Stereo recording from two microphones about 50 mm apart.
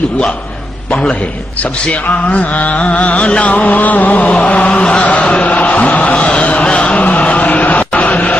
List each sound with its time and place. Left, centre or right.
1.9 s music: left
4.8 s mantra: left
5.4 s chant: left
6.6 s a sound: centre